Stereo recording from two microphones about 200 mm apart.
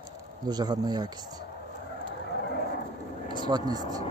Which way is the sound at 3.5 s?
20° right (ahead or behind).